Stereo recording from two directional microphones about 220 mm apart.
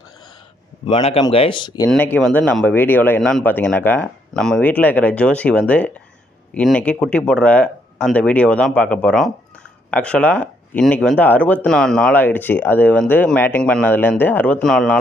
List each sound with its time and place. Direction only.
0.9 s speech: 25° left (ahead or behind)
1.9 s speech: 5° left (ahead or behind)